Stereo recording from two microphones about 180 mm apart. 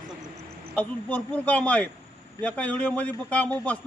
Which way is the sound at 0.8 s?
10° left (ahead or behind).